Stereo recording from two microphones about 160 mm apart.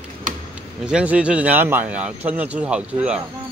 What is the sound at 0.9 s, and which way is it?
Speech, 5° right (ahead or behind).